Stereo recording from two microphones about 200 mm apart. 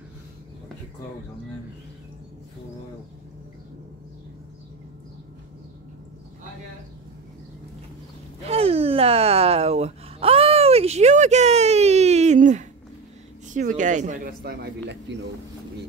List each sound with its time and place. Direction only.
8.5 s gasp: 30° right (ahead or behind)
13.5 s speech: 40° right (ahead or behind); by 15.1 s 55° right (ahead or behind)